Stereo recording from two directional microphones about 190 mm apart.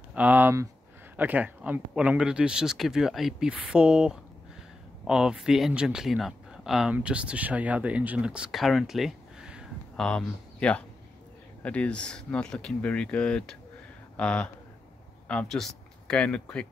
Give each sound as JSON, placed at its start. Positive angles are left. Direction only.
{"t": 0.1, "sound": "speech", "side_deg": -10}